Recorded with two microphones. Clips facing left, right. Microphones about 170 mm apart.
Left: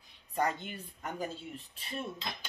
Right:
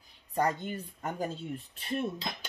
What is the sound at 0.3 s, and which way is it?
Speech, 40° right (ahead or behind).